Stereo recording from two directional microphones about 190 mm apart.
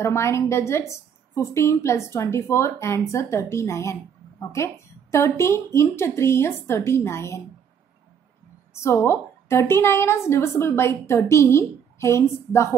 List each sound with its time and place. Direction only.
0.0 s a woman's voice: 15° left (ahead or behind)
8.7 s a woman's voice: 15° left (ahead or behind)